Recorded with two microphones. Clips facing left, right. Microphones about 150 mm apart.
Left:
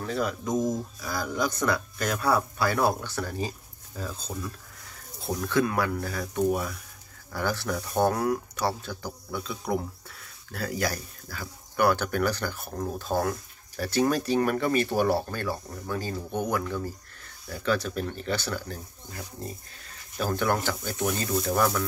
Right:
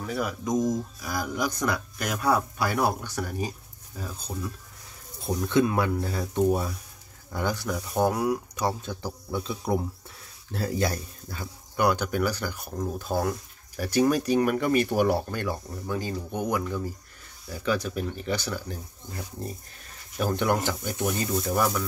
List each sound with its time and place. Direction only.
0.0 s speech: 10° right (ahead or behind)
5.4 s speech: 20° right (ahead or behind)
7.3 s speech: 15° right (ahead or behind)
20.2 s speech: 20° right (ahead or behind)